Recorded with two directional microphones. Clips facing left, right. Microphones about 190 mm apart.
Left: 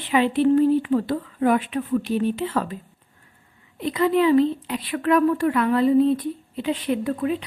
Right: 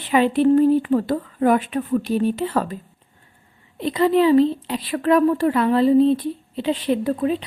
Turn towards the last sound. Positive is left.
turn(degrees=-30)  # may be behind; listen again after turning